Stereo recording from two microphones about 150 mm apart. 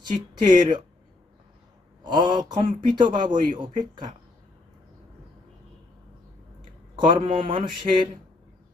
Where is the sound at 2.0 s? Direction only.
30° right (ahead or behind).